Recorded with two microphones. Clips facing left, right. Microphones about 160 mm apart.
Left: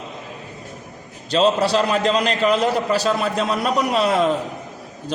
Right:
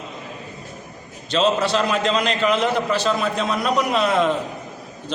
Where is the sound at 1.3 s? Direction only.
35° left (ahead or behind).